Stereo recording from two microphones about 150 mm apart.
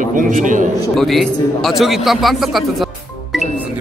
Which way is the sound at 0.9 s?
Centre (ahead or behind).